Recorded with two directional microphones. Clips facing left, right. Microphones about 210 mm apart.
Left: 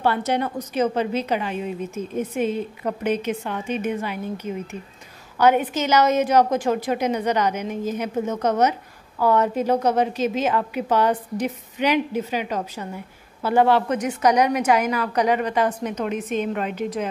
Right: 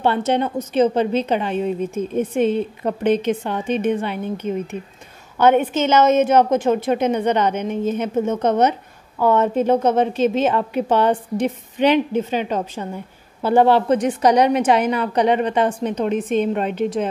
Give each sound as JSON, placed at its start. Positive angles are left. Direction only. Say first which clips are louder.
{"t": 0.0, "sound": "a woman's voice", "louder": "right 3 dB", "side_deg": -25}
{"t": 5.4, "sound": "a woman's voice", "louder": "right 3 dB", "side_deg": -25}